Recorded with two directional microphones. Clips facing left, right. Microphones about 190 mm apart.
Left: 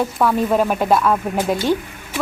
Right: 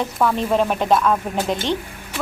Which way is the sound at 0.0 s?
5° left (ahead or behind).